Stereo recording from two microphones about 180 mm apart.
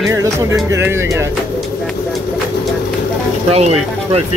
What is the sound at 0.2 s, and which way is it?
Music, 20° right (ahead or behind).